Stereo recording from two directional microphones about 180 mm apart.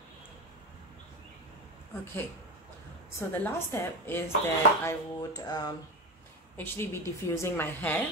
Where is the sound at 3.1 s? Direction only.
15° left (ahead or behind).